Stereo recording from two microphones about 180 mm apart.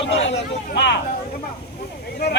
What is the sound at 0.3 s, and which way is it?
Speech, 75° left (ahead or behind).